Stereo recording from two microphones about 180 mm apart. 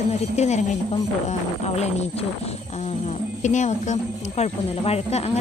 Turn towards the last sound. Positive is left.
turn(degrees=35)  # may be behind; listen again after turning